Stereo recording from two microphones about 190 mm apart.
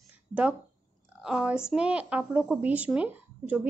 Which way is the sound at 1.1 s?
Centre (ahead or behind).